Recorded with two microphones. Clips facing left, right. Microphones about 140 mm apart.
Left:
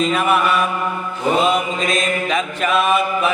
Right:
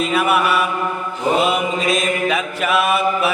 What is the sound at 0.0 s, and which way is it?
Mantra, 10° right (ahead or behind).